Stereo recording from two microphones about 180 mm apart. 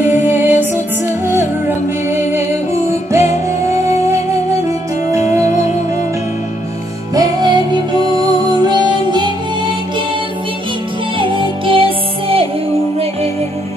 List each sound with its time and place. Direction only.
0.0 s music: 10° right (ahead or behind)
5.3 s music: 15° right (ahead or behind)
7.2 s music: 20° right (ahead or behind)
11.1 s music: 30° right (ahead or behind)